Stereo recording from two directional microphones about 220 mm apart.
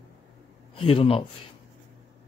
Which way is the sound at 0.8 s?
25° left (ahead or behind).